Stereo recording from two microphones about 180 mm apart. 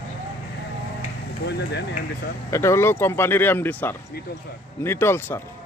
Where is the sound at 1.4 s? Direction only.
70° left (ahead or behind).